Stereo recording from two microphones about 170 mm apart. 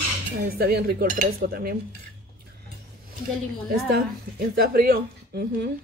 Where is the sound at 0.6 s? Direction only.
70° right (ahead or behind).